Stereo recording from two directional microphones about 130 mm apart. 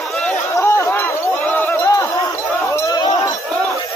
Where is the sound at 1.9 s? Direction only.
25° left (ahead or behind).